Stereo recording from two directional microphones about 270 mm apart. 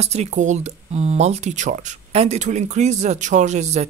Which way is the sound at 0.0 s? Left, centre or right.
Right.